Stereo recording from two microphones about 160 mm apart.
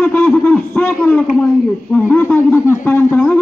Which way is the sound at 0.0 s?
10° left (ahead or behind).